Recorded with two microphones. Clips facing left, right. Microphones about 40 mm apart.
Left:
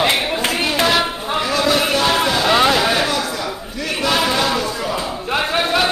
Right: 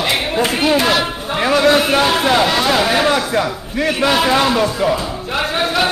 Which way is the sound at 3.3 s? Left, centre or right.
Right.